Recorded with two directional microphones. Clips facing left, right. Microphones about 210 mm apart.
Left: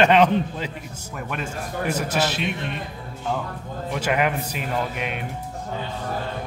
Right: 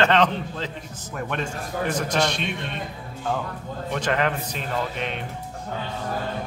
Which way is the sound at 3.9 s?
10° left (ahead or behind).